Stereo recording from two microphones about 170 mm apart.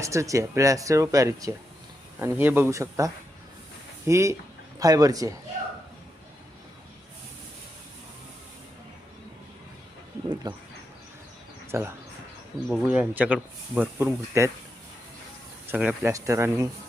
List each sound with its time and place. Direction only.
0.0 s speech: 20° right (ahead or behind)
10.5 s speech: 25° right (ahead or behind)
11.7 s speech: 15° right (ahead or behind)
15.6 s speech: 10° right (ahead or behind)